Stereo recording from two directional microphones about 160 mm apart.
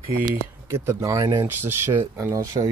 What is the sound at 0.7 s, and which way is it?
Speech, 20° right (ahead or behind).